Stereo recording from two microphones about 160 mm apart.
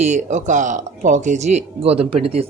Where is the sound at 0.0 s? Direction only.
50° right (ahead or behind).